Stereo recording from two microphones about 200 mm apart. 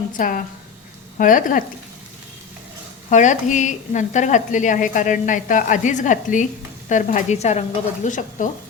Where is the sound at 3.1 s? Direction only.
40° left (ahead or behind).